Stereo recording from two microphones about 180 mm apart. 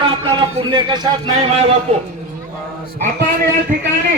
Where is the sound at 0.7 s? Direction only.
25° right (ahead or behind).